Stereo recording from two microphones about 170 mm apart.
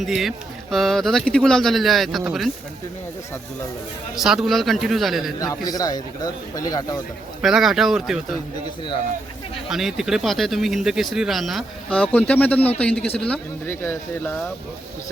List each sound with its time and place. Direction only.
0.0 s speech: centre (ahead or behind)
4.1 s speech: centre (ahead or behind)
5.6 s speech: 20° left (ahead or behind)
7.4 s speech: centre (ahead or behind)
9.6 s speech: centre (ahead or behind)